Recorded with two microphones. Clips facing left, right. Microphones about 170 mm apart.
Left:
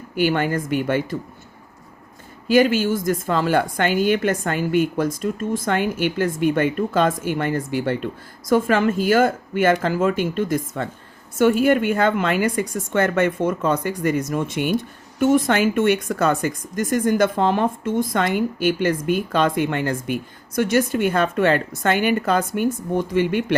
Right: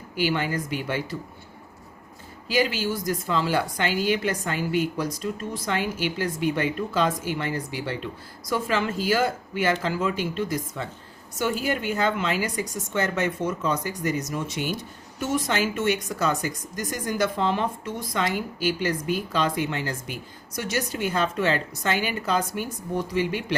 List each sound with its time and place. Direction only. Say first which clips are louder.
0.2 s speech: left 5 dB; 55° left (ahead or behind)
2.5 s speech: left 8 dB; 50° left (ahead or behind)